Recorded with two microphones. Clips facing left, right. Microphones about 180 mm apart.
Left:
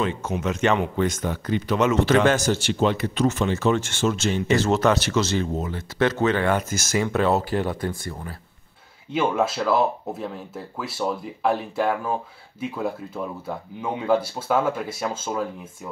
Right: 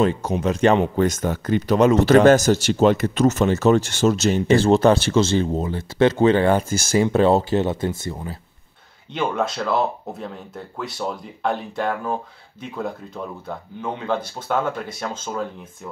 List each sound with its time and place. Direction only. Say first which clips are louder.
0.0 s speech: right 5 dB; 35° right (ahead or behind)
9.1 s speech: left 1 dB; 5° left (ahead or behind)